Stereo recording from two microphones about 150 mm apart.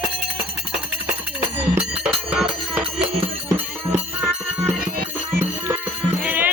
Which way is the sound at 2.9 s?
40° right (ahead or behind).